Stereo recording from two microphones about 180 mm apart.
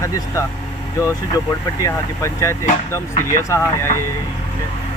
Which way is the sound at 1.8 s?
15° left (ahead or behind).